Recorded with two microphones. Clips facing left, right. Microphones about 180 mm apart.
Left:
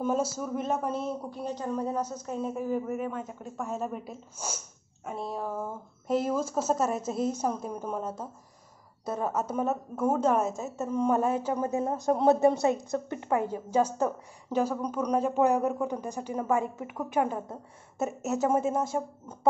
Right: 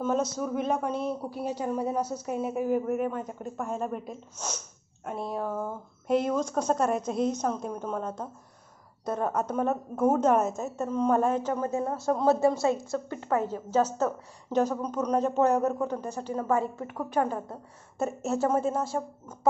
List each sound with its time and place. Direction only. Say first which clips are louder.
0.0 s speech: right 1 dB; 5° left (ahead or behind)
9.9 s speech: right 3 dB; 5° right (ahead or behind)
10.9 s a woman's voice: right 1 dB; 10° left (ahead or behind)